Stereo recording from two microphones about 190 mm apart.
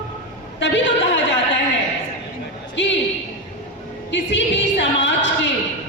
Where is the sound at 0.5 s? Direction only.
70° left (ahead or behind).